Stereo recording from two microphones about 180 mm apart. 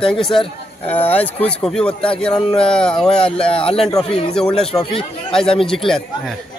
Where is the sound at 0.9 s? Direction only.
10° left (ahead or behind).